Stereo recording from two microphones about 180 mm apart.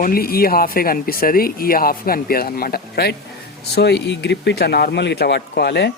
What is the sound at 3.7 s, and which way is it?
Speech, 70° left (ahead or behind).